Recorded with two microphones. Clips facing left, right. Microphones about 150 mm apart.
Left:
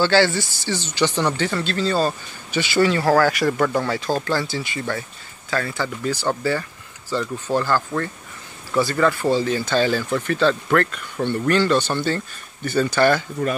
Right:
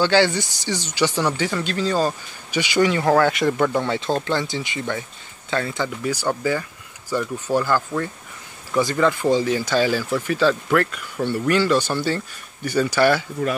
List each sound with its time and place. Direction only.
0.0 s speech: 15° right (ahead or behind)